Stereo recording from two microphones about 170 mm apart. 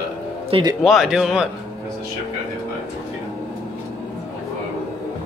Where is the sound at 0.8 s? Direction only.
Centre (ahead or behind).